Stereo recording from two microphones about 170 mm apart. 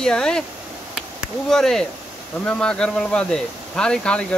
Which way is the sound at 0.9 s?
Centre (ahead or behind).